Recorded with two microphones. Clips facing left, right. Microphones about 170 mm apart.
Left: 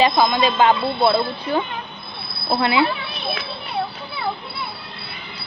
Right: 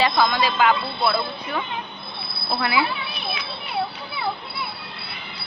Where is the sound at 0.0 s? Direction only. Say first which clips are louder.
Left 3 dB; 20° left (ahead or behind).